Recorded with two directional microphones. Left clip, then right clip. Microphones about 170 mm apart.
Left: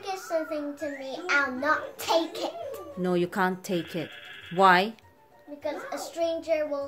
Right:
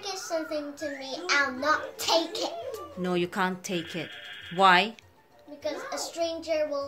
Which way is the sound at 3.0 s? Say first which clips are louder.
Left 2 dB; 25° left (ahead or behind).